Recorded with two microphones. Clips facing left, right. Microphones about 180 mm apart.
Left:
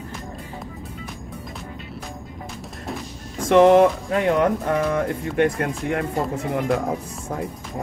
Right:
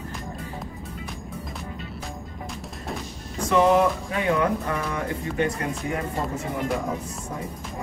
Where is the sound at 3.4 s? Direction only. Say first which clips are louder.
Left 6 dB; 65° left (ahead or behind).